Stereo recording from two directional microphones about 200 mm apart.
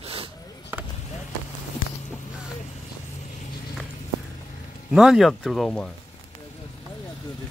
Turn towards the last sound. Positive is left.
turn(degrees=5)  # may be behind; listen again after turning